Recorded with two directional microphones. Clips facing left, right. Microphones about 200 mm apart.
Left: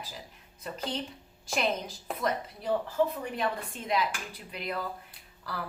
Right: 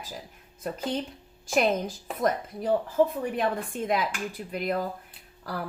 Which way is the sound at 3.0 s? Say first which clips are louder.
Right 6 dB; 50° right (ahead or behind).